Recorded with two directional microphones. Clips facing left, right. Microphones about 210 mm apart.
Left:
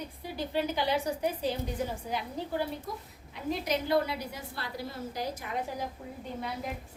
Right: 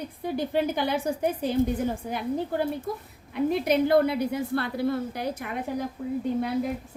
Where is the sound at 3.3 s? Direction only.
60° right (ahead or behind).